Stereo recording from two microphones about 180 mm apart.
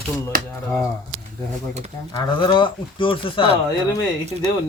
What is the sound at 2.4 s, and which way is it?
Speech, 25° left (ahead or behind).